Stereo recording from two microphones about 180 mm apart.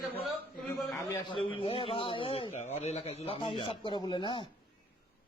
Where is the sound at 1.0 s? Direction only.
15° left (ahead or behind).